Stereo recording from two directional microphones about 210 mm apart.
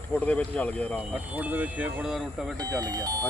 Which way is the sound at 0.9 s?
5° right (ahead or behind).